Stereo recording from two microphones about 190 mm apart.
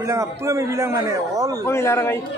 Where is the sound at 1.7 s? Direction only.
15° left (ahead or behind).